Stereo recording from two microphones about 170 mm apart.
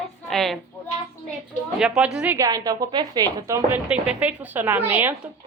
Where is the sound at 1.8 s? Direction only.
5° right (ahead or behind).